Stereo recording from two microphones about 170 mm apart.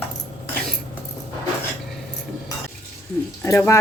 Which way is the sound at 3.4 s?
15° left (ahead or behind).